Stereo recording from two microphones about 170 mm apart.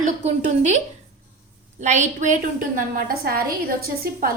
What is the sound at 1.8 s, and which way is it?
A woman's voice, 45° right (ahead or behind).